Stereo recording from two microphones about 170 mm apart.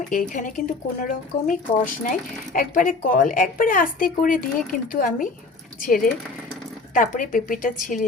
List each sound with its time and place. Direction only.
0.1 s speech: 50° left (ahead or behind)